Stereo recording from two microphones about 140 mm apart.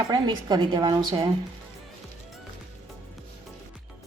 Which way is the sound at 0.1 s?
30° right (ahead or behind).